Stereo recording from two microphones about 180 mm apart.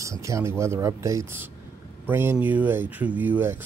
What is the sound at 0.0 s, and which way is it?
Speech, 15° right (ahead or behind).